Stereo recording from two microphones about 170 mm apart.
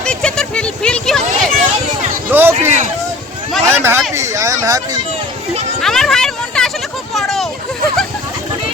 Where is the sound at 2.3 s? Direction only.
10° right (ahead or behind).